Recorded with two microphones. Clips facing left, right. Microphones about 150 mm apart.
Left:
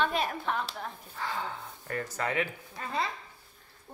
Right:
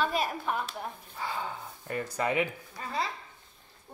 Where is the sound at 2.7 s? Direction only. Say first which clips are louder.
Left 1 dB; centre (ahead or behind).